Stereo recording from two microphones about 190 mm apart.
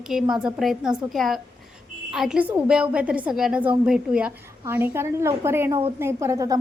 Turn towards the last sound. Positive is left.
turn(degrees=-20)  # may be behind; listen again after turning